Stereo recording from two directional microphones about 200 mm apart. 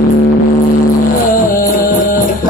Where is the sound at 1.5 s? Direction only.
40° left (ahead or behind).